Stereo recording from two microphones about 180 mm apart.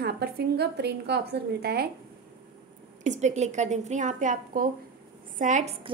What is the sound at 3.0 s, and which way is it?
A woman's voice, 40° right (ahead or behind).